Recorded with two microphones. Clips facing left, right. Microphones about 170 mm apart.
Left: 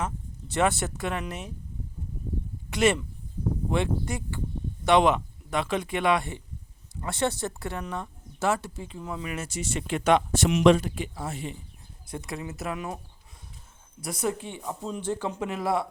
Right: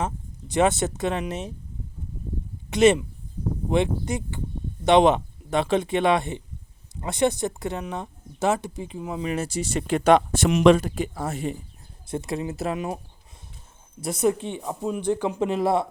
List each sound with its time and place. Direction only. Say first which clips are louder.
0.4 s speech: right 4 dB; 20° right (ahead or behind)
2.6 s speech: right 6 dB; 20° right (ahead or behind)
9.3 s speech: right 8 dB; 35° right (ahead or behind)
10.3 s speech: right 3 dB; 55° right (ahead or behind)
10.8 s speech: right 5 dB; 45° right (ahead or behind)
12.0 s speech: right 7 dB; 25° right (ahead or behind)
14.0 s speech: right 7 dB; 20° right (ahead or behind)
15.4 s speech: right 5 dB; 25° right (ahead or behind)